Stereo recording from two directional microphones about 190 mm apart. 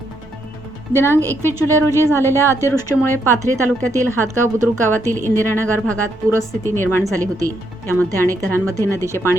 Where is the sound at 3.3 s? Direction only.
15° right (ahead or behind).